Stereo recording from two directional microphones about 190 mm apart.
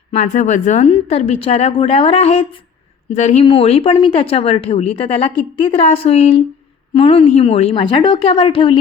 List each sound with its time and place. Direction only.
0.2 s a woman's voice: 40° left (ahead or behind)